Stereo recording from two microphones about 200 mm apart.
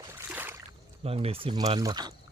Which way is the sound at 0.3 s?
10° right (ahead or behind).